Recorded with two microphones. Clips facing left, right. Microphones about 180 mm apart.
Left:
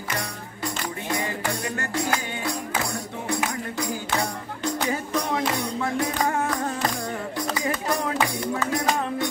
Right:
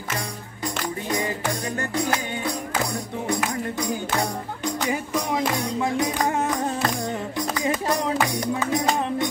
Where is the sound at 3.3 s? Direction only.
15° right (ahead or behind).